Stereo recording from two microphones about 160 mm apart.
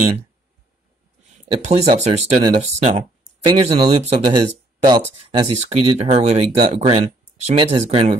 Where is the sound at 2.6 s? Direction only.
45° right (ahead or behind).